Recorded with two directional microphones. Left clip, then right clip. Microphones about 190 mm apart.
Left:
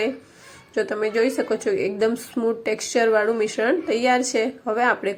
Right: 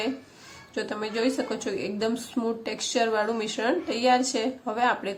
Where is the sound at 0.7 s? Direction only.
20° left (ahead or behind).